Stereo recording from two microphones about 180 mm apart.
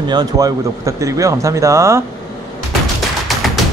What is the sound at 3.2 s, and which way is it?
Music, centre (ahead or behind).